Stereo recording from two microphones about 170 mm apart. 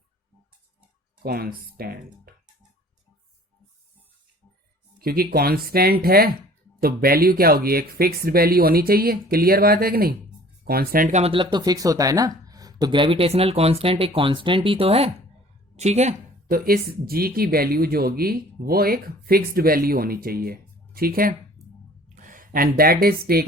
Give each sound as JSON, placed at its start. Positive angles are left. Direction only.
{"t": 1.2, "sound": "speech", "side_deg": -65}
{"t": 4.9, "sound": "speech", "side_deg": -60}
{"t": 11.2, "sound": "a woman's voice", "side_deg": -30}
{"t": 16.5, "sound": "speech", "side_deg": -60}
{"t": 22.1, "sound": "a sound", "side_deg": -50}
{"t": 22.8, "sound": "speech", "side_deg": -60}